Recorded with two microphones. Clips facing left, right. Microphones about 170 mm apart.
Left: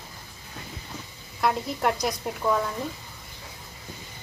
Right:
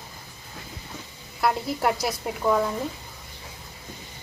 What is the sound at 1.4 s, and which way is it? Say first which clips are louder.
Speech: right 1 dB; 5° right (ahead or behind).